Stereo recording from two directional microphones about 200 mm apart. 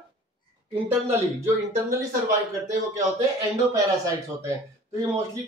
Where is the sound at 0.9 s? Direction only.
15° right (ahead or behind).